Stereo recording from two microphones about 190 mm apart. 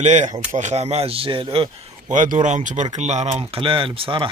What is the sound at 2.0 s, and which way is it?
Speech, 45° right (ahead or behind).